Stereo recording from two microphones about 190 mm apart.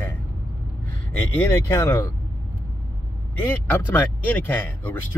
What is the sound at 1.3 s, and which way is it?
Speech, 10° left (ahead or behind).